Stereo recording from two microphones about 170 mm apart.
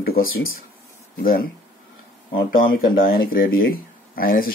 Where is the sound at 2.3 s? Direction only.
60° left (ahead or behind).